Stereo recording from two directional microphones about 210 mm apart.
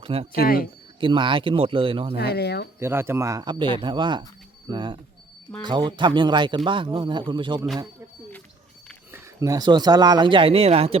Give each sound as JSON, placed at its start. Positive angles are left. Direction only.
{"t": 0.0, "sound": "speech", "side_deg": -30}
{"t": 0.3, "sound": "speech", "side_deg": 45}
{"t": 0.9, "sound": "speech", "side_deg": -25}
{"t": 2.1, "sound": "speech", "side_deg": 50}
{"t": 2.7, "sound": "speech", "side_deg": -10}
{"t": 9.1, "sound": "speech", "side_deg": -15}